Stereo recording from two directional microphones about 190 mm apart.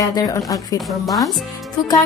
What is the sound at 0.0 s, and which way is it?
Speech, 20° left (ahead or behind).